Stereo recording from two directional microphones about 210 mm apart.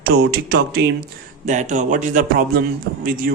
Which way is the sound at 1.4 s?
35° right (ahead or behind).